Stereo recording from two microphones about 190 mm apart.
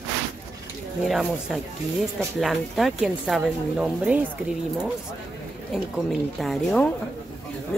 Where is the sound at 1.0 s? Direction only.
Centre (ahead or behind).